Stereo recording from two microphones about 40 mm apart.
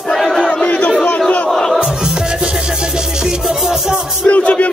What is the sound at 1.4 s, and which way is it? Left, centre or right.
Music, centre.